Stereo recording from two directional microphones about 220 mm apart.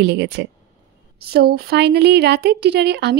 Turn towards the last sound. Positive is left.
turn(degrees=-50)  # may be behind; listen again after turning